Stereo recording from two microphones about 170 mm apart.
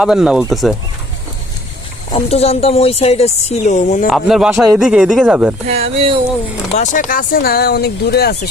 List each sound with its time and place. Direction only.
0.0 s speech: 5° right (ahead or behind)
2.1 s a woman's voice: 35° left (ahead or behind)
4.0 s speech: 5° right (ahead or behind)
5.6 s speech: 35° right (ahead or behind)
6.7 s speech: 50° left (ahead or behind); by 8.4 s 70° left (ahead or behind)